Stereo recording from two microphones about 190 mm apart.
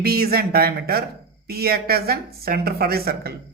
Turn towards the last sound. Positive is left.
turn(degrees=-55)  # may be behind; listen again after turning